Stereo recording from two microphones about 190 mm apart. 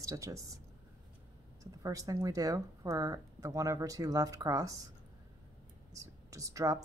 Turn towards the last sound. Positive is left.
turn(degrees=-15)  # may be behind; listen again after turning